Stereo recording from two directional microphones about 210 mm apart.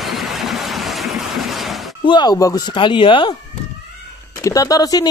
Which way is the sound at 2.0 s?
20° left (ahead or behind).